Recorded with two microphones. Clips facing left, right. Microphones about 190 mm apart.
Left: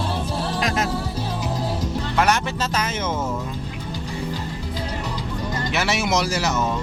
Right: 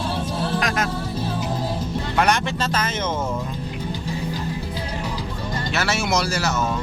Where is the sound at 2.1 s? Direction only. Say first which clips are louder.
Right 1 dB; 5° left (ahead or behind).